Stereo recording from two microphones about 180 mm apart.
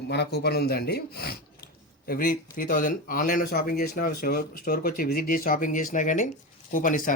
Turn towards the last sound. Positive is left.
turn(degrees=50)  # may be behind; listen again after turning